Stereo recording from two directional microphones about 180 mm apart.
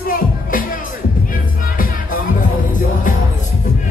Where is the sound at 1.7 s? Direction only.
50° left (ahead or behind).